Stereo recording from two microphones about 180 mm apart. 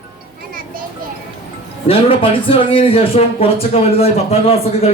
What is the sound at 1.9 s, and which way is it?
A man's voice, 30° left (ahead or behind).